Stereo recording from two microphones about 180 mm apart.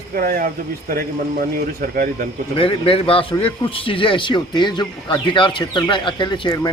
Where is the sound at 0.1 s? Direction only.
55° right (ahead or behind).